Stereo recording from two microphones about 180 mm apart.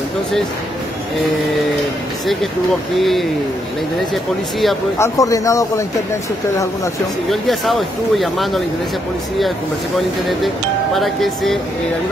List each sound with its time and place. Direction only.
3.0 s speech: centre (ahead or behind)
4.9 s speech: 15° left (ahead or behind)
7.2 s speech: centre (ahead or behind)
11.0 s speech: centre (ahead or behind)